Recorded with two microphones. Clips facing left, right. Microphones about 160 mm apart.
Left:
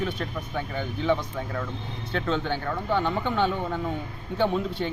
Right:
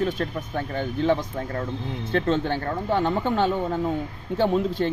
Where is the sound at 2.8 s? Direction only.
35° right (ahead or behind).